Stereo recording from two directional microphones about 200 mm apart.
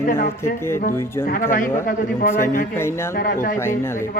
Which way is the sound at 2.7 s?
10° left (ahead or behind).